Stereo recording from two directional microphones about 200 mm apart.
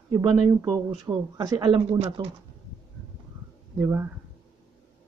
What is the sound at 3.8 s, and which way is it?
Speech, 10° right (ahead or behind).